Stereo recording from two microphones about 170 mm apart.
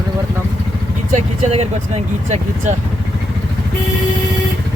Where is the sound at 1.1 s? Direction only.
40° right (ahead or behind).